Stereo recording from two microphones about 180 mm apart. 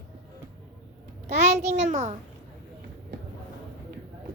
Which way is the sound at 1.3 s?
40° right (ahead or behind).